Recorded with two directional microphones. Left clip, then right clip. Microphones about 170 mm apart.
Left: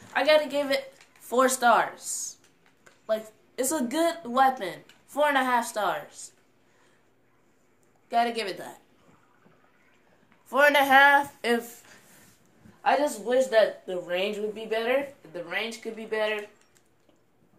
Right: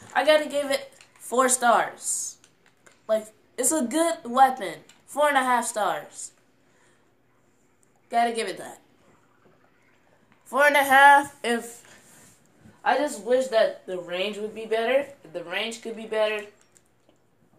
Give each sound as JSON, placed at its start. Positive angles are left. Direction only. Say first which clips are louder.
{"t": 0.1, "sound": "a woman's voice", "louder": "right 1 dB", "side_deg": 0}
{"t": 8.1, "sound": "a woman's voice", "louder": "right 2 dB", "side_deg": 5}
{"t": 10.5, "sound": "a woman's voice", "louder": "right 1 dB", "side_deg": 10}
{"t": 12.8, "sound": "speech", "louder": "even", "side_deg": 10}
{"t": 13.2, "sound": "speech", "louder": "even", "side_deg": 25}
{"t": 14.3, "sound": "a woman's voice", "louder": "right 2 dB", "side_deg": 5}
{"t": 15.3, "sound": "speech", "louder": "right 2 dB", "side_deg": -10}